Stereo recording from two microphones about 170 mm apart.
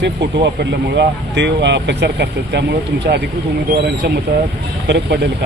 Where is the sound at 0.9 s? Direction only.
90° right.